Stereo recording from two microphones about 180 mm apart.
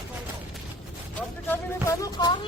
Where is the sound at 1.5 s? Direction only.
20° left (ahead or behind).